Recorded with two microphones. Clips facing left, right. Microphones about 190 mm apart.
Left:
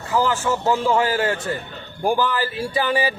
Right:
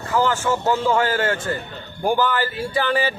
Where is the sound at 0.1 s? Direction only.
10° left (ahead or behind).